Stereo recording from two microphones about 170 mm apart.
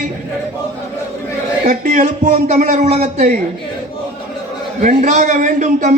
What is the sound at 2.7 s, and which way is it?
Speech, 40° right (ahead or behind).